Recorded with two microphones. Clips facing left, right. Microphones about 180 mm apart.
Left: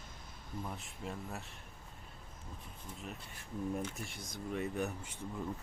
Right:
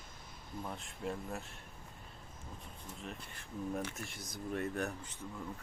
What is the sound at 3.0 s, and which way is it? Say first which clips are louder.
Speech: right 1 dB; 5° left (ahead or behind).